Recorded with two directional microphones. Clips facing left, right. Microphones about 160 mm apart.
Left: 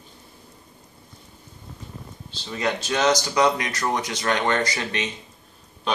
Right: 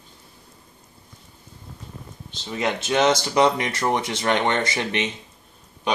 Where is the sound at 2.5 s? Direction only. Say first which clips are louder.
Right 2 dB; 20° right (ahead or behind).